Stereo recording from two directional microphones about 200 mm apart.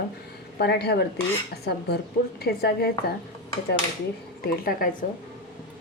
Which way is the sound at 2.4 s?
50° left (ahead or behind).